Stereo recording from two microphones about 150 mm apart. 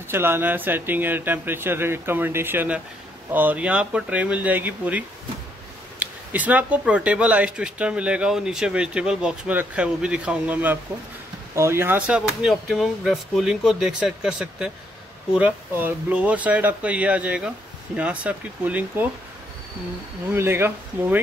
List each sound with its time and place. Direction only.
0.1 s speech: 15° right (ahead or behind)
20.2 s speech: 15° right (ahead or behind)